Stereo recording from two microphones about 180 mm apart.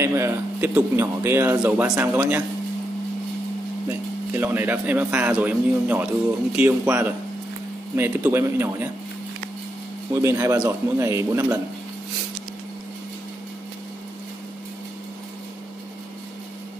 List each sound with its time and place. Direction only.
0.0 s speech: 15° right (ahead or behind)
4.3 s speech: 10° right (ahead or behind)
10.1 s speech: 20° right (ahead or behind)